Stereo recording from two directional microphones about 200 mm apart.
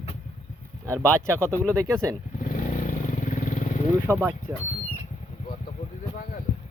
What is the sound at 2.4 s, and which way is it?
Vehicle, 40° left (ahead or behind).